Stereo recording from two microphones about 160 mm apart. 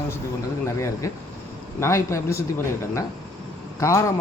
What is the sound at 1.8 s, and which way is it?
Speech, 15° left (ahead or behind).